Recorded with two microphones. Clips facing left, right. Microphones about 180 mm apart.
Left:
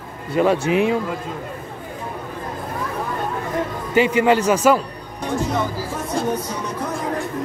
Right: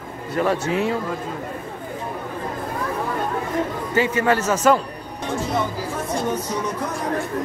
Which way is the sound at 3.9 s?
15° left (ahead or behind).